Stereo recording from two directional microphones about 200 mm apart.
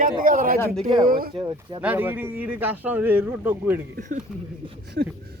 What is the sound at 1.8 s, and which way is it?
A man's voice, 10° right (ahead or behind).